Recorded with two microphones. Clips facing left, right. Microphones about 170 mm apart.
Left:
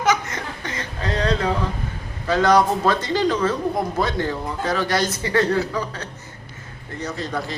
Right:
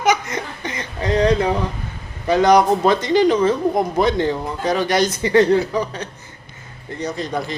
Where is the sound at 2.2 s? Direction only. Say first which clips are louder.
Right 3 dB; 15° right (ahead or behind).